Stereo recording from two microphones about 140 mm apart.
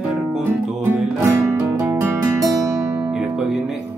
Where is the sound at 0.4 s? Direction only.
15° right (ahead or behind).